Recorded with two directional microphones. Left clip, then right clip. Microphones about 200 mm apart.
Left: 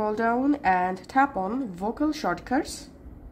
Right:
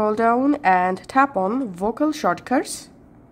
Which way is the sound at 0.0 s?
25° right (ahead or behind).